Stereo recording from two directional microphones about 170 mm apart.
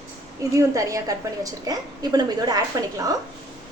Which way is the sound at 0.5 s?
20° right (ahead or behind).